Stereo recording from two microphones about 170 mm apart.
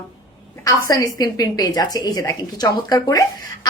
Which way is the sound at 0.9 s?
20° left (ahead or behind).